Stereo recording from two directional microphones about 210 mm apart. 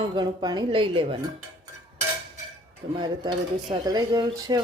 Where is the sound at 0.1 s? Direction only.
20° right (ahead or behind).